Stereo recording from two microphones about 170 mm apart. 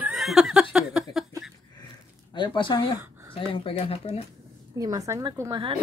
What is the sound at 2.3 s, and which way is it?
Speech, 30° left (ahead or behind).